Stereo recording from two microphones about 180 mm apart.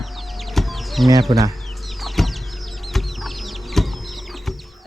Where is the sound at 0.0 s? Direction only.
Centre (ahead or behind).